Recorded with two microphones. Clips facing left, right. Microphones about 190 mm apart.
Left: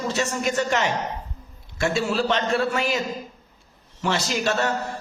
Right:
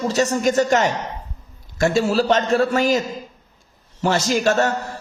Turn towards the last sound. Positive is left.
turn(degrees=-45)  # may be behind; listen again after turning